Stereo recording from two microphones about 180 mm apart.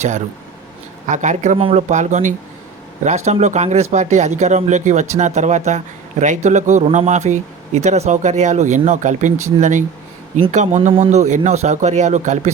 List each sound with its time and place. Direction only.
1.0 s speech: 45° right (ahead or behind)